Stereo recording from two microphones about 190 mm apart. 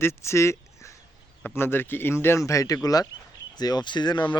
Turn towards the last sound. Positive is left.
turn(degrees=25)  # may be behind; listen again after turning